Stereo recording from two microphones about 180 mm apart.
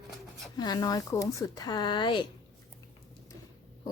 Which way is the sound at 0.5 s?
20° left (ahead or behind).